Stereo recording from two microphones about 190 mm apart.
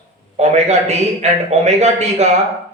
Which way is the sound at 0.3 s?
35° right (ahead or behind).